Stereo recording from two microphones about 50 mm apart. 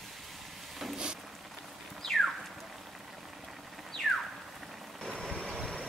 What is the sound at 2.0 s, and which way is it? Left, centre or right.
Horse, centre.